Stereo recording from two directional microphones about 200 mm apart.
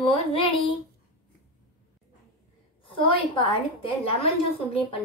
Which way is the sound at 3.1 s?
25° left (ahead or behind).